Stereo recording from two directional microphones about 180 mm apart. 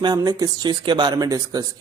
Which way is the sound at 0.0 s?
20° right (ahead or behind).